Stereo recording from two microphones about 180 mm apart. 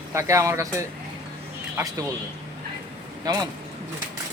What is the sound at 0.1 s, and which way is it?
Speech, 15° right (ahead or behind).